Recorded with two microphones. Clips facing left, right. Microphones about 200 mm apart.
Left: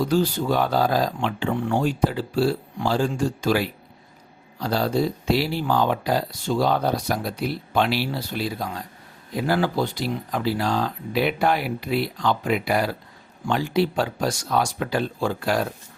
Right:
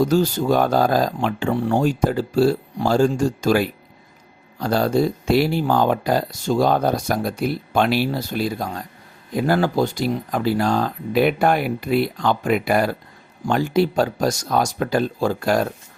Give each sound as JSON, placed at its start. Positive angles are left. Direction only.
{"t": 0.0, "sound": "speech", "side_deg": -45}